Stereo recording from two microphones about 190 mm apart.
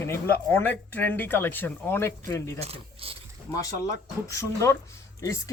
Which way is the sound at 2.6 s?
30° right (ahead or behind).